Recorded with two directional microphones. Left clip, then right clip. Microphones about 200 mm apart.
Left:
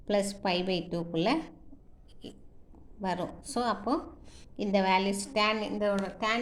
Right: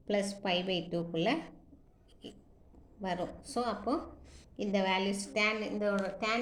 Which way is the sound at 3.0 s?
30° left (ahead or behind).